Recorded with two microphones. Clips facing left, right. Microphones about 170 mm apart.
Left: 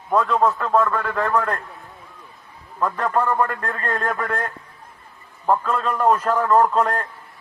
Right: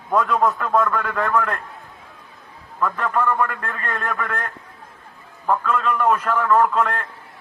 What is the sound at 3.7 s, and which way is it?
Speech, 35° left (ahead or behind).